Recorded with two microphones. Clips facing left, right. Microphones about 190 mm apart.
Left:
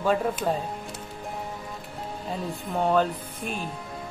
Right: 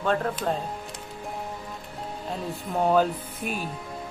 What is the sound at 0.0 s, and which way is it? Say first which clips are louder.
Speech: left 1 dB; 10° left (ahead or behind).